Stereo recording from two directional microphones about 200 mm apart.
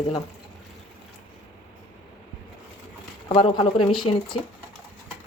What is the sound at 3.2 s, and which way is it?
Speech, 25° left (ahead or behind).